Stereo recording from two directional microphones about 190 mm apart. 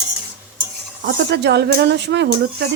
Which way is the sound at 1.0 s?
65° right (ahead or behind).